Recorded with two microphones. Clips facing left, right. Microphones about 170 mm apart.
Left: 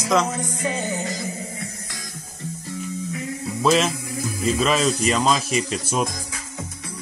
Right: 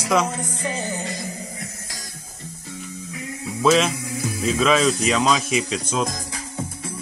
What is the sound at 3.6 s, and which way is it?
Speech, centre (ahead or behind).